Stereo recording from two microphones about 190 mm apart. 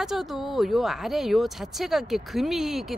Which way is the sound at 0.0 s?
Centre (ahead or behind).